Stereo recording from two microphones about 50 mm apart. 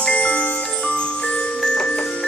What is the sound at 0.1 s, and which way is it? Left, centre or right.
Music, left.